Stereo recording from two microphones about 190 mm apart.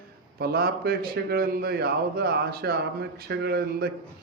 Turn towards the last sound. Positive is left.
turn(degrees=-55)  # may be behind; listen again after turning